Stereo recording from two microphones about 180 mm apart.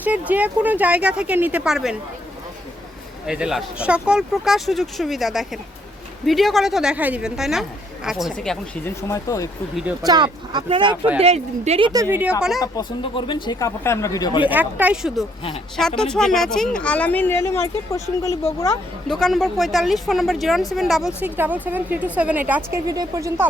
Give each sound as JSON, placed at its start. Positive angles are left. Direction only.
{"t": 0.0, "sound": "speech", "side_deg": -10}
{"t": 3.2, "sound": "a woman's voice", "side_deg": -5}
{"t": 8.8, "sound": "speech", "side_deg": 15}
{"t": 10.0, "sound": "speech", "side_deg": -25}
{"t": 11.9, "sound": "speech", "side_deg": -20}
{"t": 12.5, "sound": "speech", "side_deg": 20}
{"t": 14.4, "sound": "speech", "side_deg": -10}
{"t": 19.0, "sound": "a woman's voice", "side_deg": 0}